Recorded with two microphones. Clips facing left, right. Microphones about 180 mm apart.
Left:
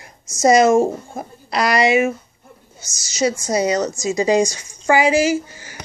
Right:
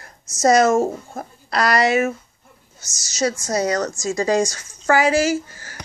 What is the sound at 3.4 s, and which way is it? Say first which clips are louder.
A woman's voice: left 2 dB; 20° left (ahead or behind).